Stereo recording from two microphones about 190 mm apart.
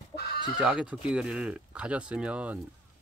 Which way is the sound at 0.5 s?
5° right (ahead or behind).